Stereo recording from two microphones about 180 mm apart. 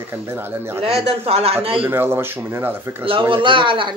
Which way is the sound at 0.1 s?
15° right (ahead or behind).